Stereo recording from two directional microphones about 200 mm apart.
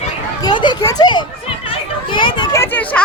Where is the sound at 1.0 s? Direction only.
20° left (ahead or behind).